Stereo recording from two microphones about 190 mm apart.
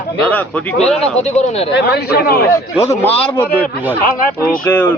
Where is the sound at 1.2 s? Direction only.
35° left (ahead or behind).